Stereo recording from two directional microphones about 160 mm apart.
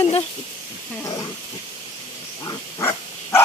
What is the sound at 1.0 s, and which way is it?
Speech, 20° left (ahead or behind).